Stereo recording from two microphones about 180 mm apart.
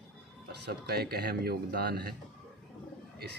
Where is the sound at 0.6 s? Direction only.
60° right (ahead or behind).